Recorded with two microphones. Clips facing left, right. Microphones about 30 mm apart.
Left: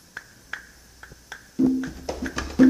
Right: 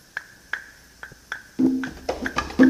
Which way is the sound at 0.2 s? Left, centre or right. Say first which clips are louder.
Right 6 dB; right.